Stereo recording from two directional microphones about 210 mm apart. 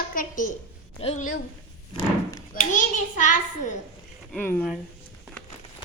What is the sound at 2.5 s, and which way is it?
Speech, 35° left (ahead or behind).